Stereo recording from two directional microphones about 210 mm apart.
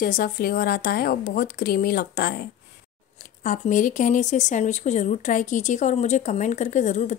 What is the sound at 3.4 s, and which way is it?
Speech, 40° left (ahead or behind).